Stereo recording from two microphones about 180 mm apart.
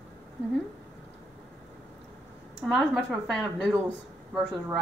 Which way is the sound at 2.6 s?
Centre (ahead or behind).